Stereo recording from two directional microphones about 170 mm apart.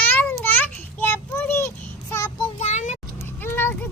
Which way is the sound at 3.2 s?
15° left (ahead or behind).